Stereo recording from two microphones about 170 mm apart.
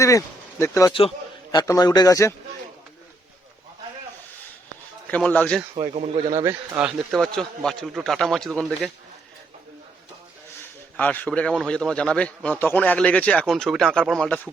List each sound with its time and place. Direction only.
0.6 s a man's voice: 20° left (ahead or behind)
5.0 s a man's voice: 10° left (ahead or behind)
5.7 s speech: 35° right (ahead or behind)
6.7 s a man's voice: 5° right (ahead or behind)
10.9 s a man's voice: 10° left (ahead or behind)